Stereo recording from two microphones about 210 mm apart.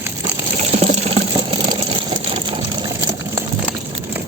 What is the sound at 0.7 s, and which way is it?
Water, 30° right (ahead or behind).